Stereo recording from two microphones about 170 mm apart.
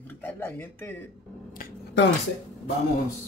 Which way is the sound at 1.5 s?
75° left (ahead or behind).